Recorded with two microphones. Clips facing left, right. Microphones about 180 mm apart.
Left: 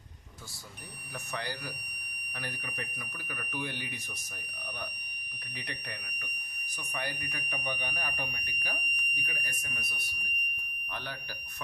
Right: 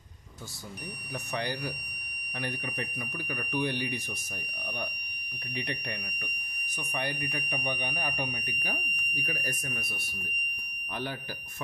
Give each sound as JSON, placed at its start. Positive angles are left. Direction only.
{"t": 1.3, "sound": "speech", "side_deg": -20}
{"t": 3.5, "sound": "speech", "side_deg": -30}
{"t": 5.6, "sound": "speech", "side_deg": -25}
{"t": 9.1, "sound": "speech", "side_deg": -35}